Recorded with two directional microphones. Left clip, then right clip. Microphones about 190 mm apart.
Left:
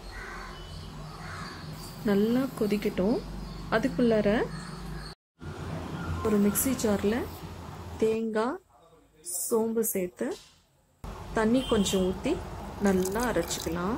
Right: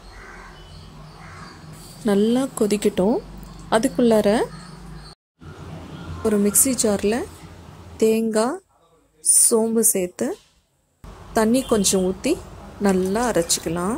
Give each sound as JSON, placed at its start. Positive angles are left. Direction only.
{"t": 2.0, "sound": "a woman's voice", "side_deg": -40}
{"t": 6.5, "sound": "a woman's voice", "side_deg": -30}
{"t": 11.3, "sound": "a woman's voice", "side_deg": -35}